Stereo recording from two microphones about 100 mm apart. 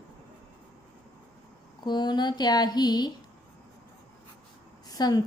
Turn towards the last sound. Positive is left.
turn(degrees=40)  # may be behind; listen again after turning